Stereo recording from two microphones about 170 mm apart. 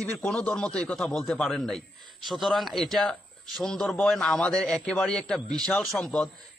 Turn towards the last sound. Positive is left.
turn(degrees=5)  # may be behind; listen again after turning